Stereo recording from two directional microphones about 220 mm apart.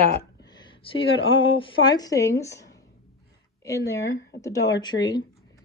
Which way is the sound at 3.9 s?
15° left (ahead or behind).